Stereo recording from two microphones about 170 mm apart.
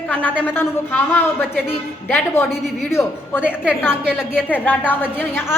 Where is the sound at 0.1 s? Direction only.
10° left (ahead or behind).